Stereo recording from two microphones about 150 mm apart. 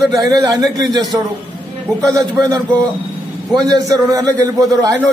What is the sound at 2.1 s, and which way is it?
A man's voice, 25° right (ahead or behind).